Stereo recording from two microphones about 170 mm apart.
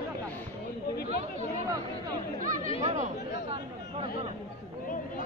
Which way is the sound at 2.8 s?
40° right (ahead or behind).